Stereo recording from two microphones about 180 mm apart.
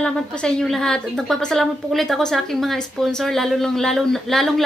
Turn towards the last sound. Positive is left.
turn(degrees=0)  # may be behind; listen again after turning